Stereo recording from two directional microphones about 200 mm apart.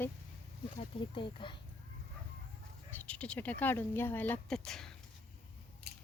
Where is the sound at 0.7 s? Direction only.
25° left (ahead or behind).